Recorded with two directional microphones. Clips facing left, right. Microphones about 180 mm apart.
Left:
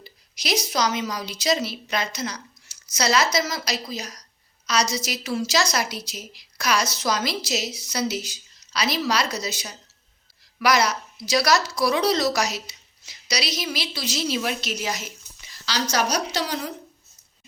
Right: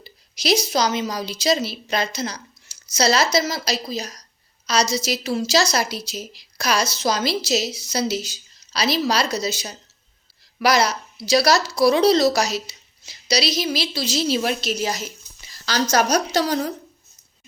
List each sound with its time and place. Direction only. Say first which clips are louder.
0.0 s a woman's voice: right 7 dB; 30° right (ahead or behind)
15.6 s a woman's voice: right 5 dB; 45° right (ahead or behind)